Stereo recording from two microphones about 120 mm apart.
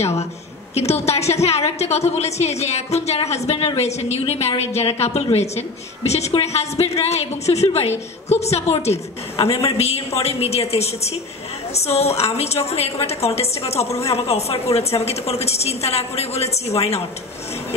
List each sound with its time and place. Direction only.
0.7 s a woman's voice: 60° left (ahead or behind)